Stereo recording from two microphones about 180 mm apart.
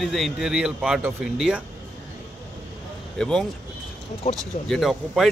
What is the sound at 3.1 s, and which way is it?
Speech, 5° left (ahead or behind).